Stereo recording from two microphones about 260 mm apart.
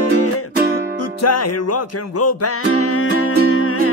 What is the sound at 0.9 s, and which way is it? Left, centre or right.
Music, left.